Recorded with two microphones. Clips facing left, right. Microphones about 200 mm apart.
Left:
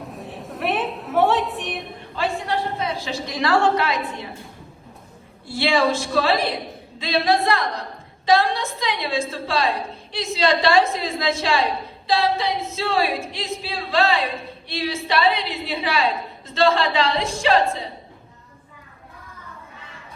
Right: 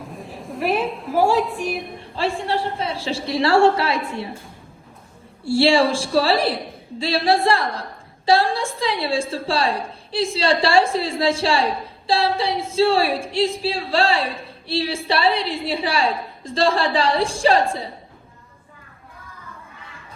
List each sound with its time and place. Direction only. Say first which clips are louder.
0.0 s a sound: even; centre (ahead or behind)
2.1 s a woman's voice: right 1 dB; 30° right (ahead or behind)
5.5 s a woman's voice: right 4 dB; 30° right (ahead or behind)